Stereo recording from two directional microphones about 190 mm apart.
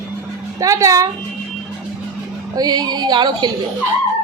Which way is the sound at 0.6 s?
15° right (ahead or behind).